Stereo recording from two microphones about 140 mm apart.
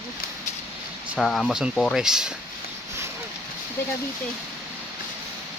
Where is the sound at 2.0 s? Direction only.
5° right (ahead or behind).